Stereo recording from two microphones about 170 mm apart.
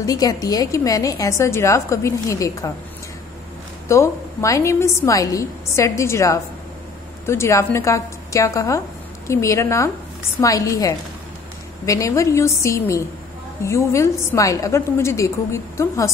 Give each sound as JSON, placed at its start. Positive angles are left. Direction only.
{"t": 0.0, "sound": "a woman's voice", "side_deg": 20}
{"t": 3.9, "sound": "a woman's voice", "side_deg": 15}